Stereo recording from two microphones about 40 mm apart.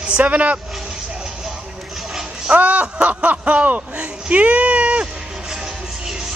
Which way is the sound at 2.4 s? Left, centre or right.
Right.